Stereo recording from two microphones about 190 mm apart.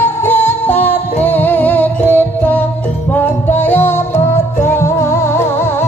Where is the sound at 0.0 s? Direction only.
10° left (ahead or behind).